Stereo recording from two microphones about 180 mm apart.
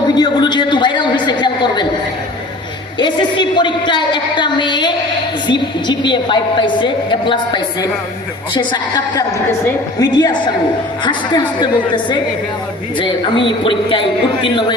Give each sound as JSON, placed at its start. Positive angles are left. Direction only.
{"t": 0.1, "sound": "a sound", "side_deg": 25}
{"t": 3.0, "sound": "a woman's voice", "side_deg": 25}
{"t": 6.1, "sound": "a woman's voice", "side_deg": 25}